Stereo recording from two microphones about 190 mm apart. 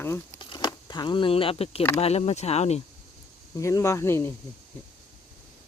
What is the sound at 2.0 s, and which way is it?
Speech, 35° left (ahead or behind).